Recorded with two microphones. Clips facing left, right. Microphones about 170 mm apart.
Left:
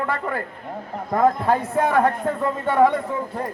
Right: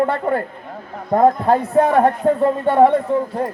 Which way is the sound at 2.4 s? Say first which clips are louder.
Right 6 dB; 55° right (ahead or behind).